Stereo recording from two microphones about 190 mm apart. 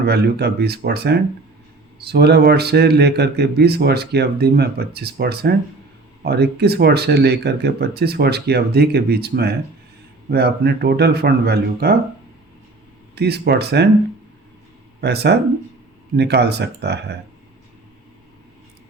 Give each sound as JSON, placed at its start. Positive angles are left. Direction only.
{"t": 0.0, "sound": "speech", "side_deg": -60}
{"t": 13.1, "sound": "speech", "side_deg": -60}
{"t": 15.0, "sound": "speech", "side_deg": -60}